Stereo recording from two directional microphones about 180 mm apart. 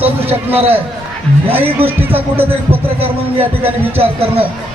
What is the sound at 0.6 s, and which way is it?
Speech, 35° right (ahead or behind).